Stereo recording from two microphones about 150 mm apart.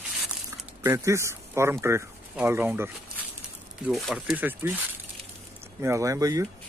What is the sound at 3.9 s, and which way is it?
Speech, centre (ahead or behind).